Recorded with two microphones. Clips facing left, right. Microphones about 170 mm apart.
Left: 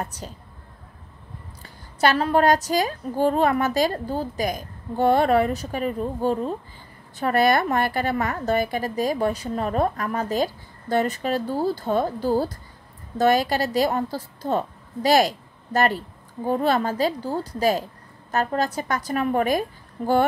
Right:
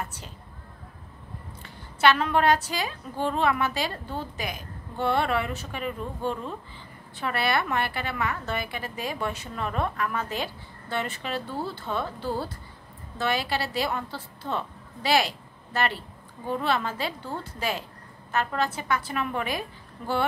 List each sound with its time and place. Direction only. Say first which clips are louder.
0.0 s speech: left 4 dB; 40° left (ahead or behind)
1.6 s a woman's voice: left 2 dB; 40° left (ahead or behind)